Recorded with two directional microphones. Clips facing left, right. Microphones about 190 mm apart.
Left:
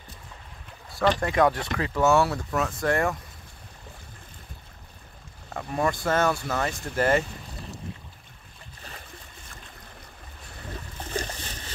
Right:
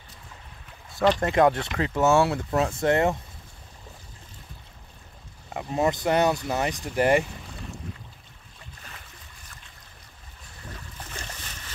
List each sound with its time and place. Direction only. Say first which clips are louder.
1.2 s speech: right 2 dB; 25° right (ahead or behind)
5.5 s speech: right 2 dB; 20° right (ahead or behind)
11.1 s a sound: left 11 dB; 35° left (ahead or behind)